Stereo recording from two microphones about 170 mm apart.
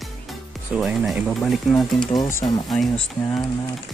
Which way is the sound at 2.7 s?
Centre (ahead or behind).